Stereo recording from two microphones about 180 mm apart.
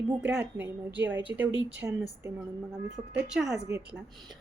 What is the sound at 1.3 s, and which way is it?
Speech, 15° right (ahead or behind).